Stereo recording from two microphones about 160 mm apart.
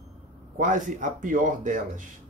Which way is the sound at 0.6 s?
50° right (ahead or behind).